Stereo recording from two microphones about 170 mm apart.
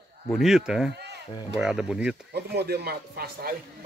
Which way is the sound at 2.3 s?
70° right (ahead or behind).